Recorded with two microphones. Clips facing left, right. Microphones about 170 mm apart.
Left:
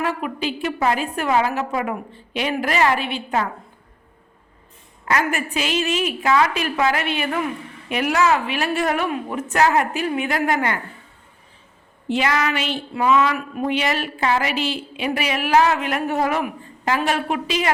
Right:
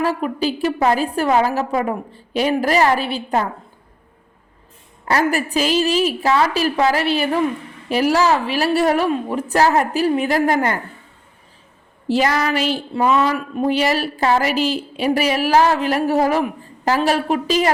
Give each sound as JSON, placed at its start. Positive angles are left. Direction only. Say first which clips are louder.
{"t": 0.0, "sound": "speech", "louder": "right 4 dB", "side_deg": -35}
{"t": 5.0, "sound": "speech", "louder": "right 4 dB", "side_deg": -35}
{"t": 12.0, "sound": "speech", "louder": "right 3 dB", "side_deg": -35}